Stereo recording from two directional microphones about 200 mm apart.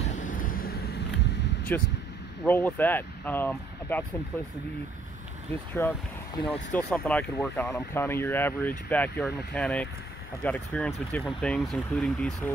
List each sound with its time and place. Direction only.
0.1 s vehicle: 40° left (ahead or behind)
1.7 s speech: 10° left (ahead or behind)
5.8 s speech: 10° left (ahead or behind)